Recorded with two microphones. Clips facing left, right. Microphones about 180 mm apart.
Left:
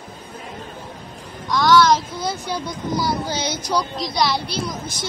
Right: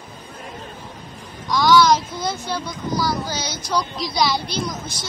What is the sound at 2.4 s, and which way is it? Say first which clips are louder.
Speech: left 1 dB; 20° left (ahead or behind).